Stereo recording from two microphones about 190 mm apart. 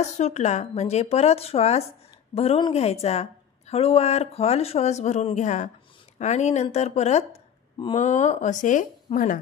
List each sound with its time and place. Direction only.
0.0 s a woman's voice: 35° left (ahead or behind)